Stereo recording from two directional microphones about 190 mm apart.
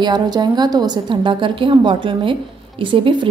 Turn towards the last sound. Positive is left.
turn(degrees=-25)  # may be behind; listen again after turning